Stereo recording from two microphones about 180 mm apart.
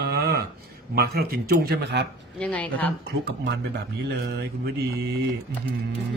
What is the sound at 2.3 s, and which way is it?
Speech, 5° left (ahead or behind).